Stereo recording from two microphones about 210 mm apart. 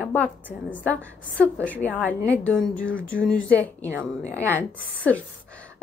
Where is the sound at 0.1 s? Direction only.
10° left (ahead or behind).